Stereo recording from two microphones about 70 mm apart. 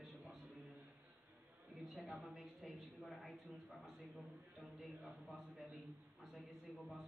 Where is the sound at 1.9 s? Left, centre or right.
Centre.